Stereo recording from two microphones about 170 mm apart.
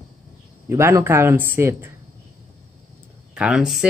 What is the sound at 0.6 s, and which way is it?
Speech, 15° right (ahead or behind).